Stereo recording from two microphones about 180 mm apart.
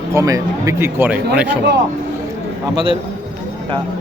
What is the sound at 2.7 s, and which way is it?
Speech, 30° right (ahead or behind).